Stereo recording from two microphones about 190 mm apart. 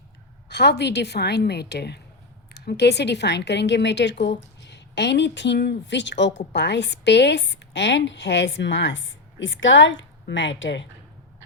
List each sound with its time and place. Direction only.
0.4 s a woman's voice: 60° left (ahead or behind)